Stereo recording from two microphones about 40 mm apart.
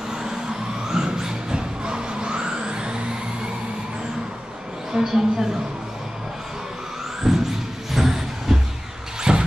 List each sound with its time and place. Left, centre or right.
0.1 s vehicle: centre
4.9 s a woman's voice: centre
7.2 s music: centre
7.9 s vehicle: centre
9.3 s music: centre